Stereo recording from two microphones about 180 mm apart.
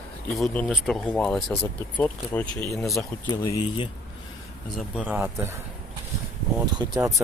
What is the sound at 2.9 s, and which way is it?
Speech, 20° left (ahead or behind).